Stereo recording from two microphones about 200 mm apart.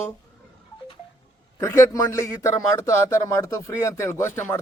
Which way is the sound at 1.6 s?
15° left (ahead or behind).